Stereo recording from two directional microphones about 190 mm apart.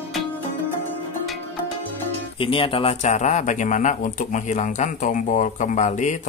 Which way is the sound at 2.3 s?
30° left (ahead or behind).